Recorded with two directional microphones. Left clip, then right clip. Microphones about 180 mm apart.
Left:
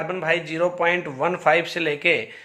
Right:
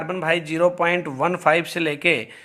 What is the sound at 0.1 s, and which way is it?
A man's voice, 40° right (ahead or behind).